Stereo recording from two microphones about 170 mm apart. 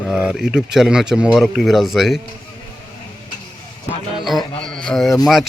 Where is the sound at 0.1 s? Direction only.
5° right (ahead or behind).